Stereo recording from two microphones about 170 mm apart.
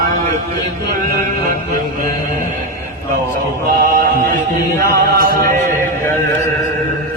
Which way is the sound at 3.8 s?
55° right (ahead or behind).